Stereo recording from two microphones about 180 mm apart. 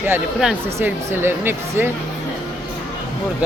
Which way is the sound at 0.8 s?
10° right (ahead or behind).